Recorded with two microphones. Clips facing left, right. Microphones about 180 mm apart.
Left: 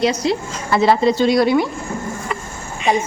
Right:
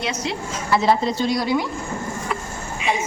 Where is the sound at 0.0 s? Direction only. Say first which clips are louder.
Left 9 dB; 35° left (ahead or behind).